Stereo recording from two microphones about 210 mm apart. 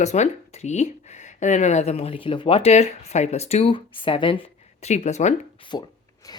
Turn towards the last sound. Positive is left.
turn(degrees=20)  # may be behind; listen again after turning